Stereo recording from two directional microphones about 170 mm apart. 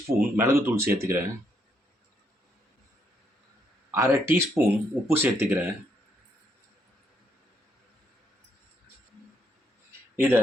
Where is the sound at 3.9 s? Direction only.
15° right (ahead or behind).